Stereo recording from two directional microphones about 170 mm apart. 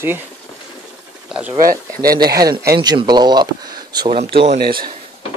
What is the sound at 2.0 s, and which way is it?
Speech, 60° right (ahead or behind).